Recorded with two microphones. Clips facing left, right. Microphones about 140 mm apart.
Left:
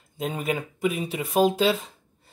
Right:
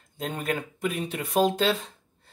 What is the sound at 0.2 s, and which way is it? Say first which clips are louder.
Speech: left 2 dB; 5° left (ahead or behind).